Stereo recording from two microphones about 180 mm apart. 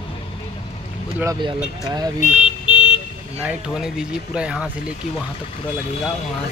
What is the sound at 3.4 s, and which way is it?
Speech, 5° right (ahead or behind).